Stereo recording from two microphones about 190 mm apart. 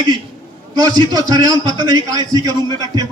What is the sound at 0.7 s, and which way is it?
A man's voice, 20° right (ahead or behind).